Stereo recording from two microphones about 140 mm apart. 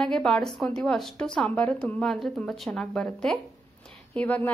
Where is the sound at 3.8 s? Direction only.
5° left (ahead or behind).